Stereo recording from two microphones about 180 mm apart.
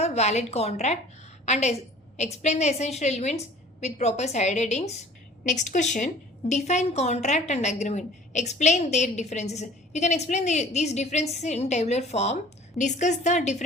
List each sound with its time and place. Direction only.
0.0 s a woman's voice: 35° left (ahead or behind)